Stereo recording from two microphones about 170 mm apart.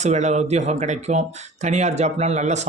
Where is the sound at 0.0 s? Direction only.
40° right (ahead or behind).